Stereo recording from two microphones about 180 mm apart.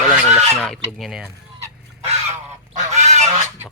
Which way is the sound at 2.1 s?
40° right (ahead or behind).